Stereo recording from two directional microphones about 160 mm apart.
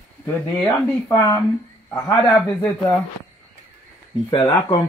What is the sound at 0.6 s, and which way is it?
Speech, 15° left (ahead or behind).